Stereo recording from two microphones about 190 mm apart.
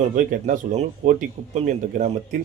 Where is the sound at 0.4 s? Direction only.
45° right (ahead or behind).